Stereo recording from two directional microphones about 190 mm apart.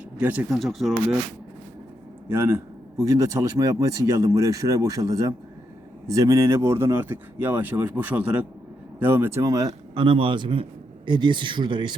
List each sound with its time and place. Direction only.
0.2 s speech: 5° right (ahead or behind)
2.3 s speech: 15° right (ahead or behind)